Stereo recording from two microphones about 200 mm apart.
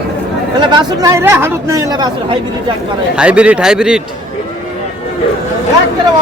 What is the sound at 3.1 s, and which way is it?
Speech, 5° right (ahead or behind).